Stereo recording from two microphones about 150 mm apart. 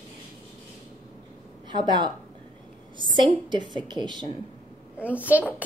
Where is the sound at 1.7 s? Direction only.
30° right (ahead or behind).